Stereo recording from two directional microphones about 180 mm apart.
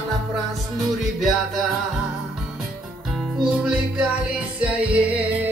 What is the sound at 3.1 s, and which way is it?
Music, centre (ahead or behind).